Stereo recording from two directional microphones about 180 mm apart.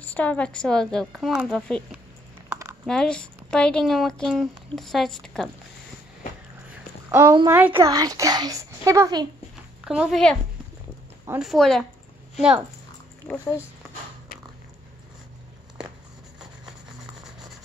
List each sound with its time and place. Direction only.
0.0 s speech: 10° left (ahead or behind)
7.1 s speech: 15° right (ahead or behind)
7.8 s a child's voice: 20° right (ahead or behind)
9.8 s speech: centre (ahead or behind)